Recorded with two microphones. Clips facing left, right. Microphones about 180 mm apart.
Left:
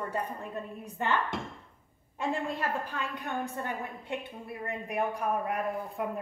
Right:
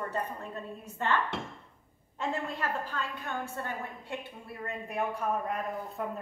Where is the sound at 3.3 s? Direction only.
15° left (ahead or behind).